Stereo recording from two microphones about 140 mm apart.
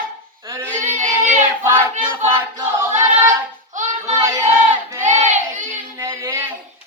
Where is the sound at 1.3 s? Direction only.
15° right (ahead or behind).